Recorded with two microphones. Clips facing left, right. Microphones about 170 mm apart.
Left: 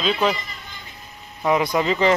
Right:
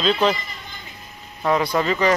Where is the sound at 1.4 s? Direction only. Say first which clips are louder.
Even; 15° left (ahead or behind).